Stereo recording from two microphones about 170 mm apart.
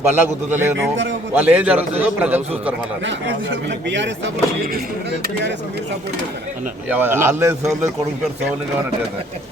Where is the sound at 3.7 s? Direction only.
90° right; by 4.8 s 75° right (ahead or behind).